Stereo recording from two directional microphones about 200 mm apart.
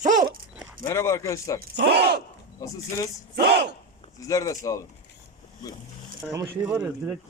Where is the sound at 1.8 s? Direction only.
55° right (ahead or behind).